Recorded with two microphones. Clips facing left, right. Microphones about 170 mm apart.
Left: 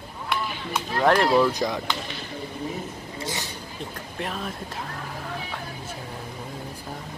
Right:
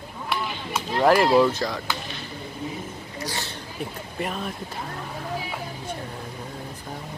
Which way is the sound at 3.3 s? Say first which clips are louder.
Even; 15° left (ahead or behind).